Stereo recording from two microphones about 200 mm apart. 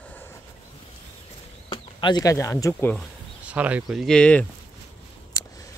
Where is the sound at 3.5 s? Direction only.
5° right (ahead or behind).